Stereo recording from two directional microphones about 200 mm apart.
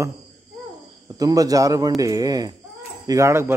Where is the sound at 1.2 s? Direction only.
20° right (ahead or behind).